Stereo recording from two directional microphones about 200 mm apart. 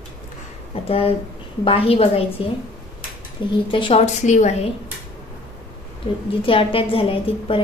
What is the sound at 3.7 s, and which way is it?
Speech, 25° left (ahead or behind).